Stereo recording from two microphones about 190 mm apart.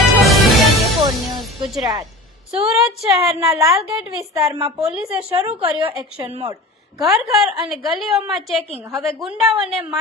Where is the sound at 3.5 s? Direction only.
15° right (ahead or behind).